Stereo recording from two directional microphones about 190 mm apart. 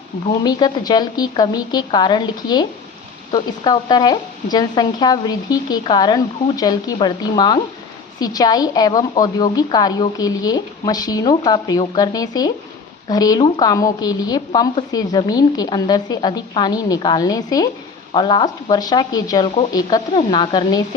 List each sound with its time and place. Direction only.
0.3 s a woman's voice: 20° left (ahead or behind)